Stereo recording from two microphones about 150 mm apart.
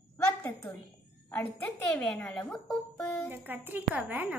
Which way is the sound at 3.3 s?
15° right (ahead or behind).